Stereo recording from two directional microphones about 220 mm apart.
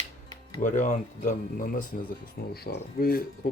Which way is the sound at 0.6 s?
35° left (ahead or behind).